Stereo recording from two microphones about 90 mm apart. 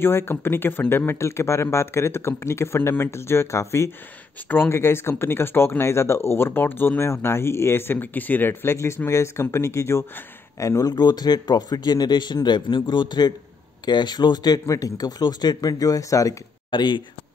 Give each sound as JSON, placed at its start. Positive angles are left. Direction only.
{"t": 0.0, "sound": "speech", "side_deg": 25}
{"t": 10.8, "sound": "a man's voice", "side_deg": 45}
{"t": 16.7, "sound": "speech", "side_deg": 60}